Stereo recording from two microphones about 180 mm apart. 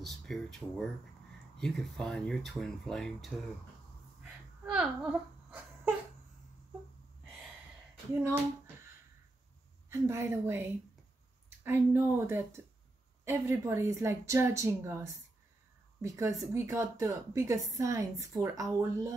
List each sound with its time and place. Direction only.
0.0 s speech: centre (ahead or behind)
4.2 s a sound: 5° right (ahead or behind)
9.8 s a woman's voice: 15° right (ahead or behind)